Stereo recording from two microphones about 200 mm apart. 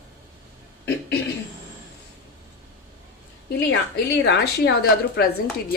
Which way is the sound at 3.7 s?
55° left (ahead or behind).